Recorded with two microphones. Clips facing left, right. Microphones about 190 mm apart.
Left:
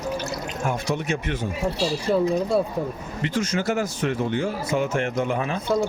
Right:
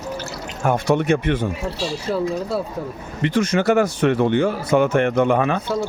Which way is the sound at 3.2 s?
65° right (ahead or behind).